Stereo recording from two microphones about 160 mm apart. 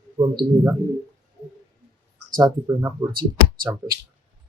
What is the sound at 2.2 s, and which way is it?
Speech, 25° right (ahead or behind).